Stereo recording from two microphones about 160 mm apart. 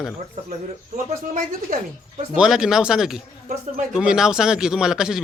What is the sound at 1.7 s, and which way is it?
Speech, 55° right (ahead or behind).